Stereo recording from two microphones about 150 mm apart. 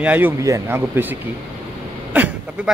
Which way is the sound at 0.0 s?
10° right (ahead or behind).